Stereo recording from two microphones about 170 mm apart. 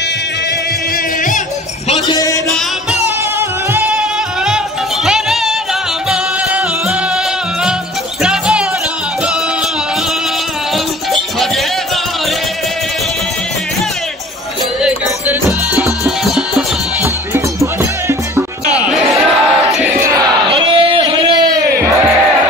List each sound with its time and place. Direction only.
2.0 s a sound: 20° left (ahead or behind)
3.3 s music: 10° right (ahead or behind)
5.0 s music: centre (ahead or behind)
8.2 s music: 5° right (ahead or behind)
14.8 s music: 5° right (ahead or behind)
17.0 s music: 15° right (ahead or behind)
20.4 s a sound: 30° right (ahead or behind)